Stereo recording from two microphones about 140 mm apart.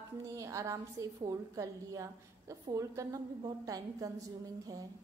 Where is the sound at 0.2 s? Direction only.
25° right (ahead or behind).